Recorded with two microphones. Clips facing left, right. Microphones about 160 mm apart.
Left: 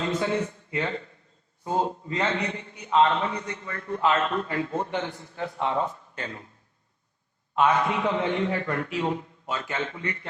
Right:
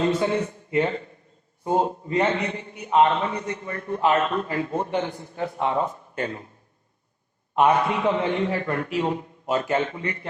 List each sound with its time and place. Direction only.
0.0 s a man's voice: 30° right (ahead or behind)
7.6 s a man's voice: 25° right (ahead or behind)